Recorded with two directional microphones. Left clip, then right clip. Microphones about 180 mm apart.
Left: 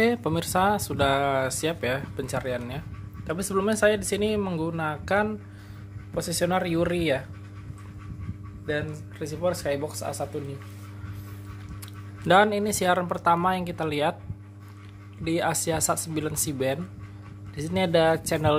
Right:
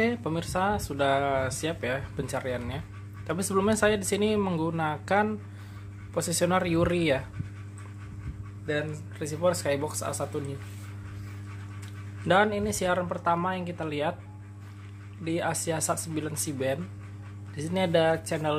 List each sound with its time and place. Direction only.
0.0 s speech: 20° left (ahead or behind); by 7.2 s centre (ahead or behind)
8.6 s speech: centre (ahead or behind)
12.3 s speech: 20° left (ahead or behind)
15.2 s speech: 20° left (ahead or behind)